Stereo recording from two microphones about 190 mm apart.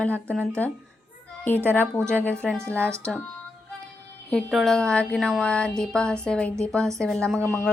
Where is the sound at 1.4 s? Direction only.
10° left (ahead or behind).